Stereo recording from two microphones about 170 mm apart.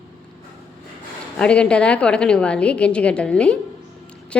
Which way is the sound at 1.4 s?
5° left (ahead or behind).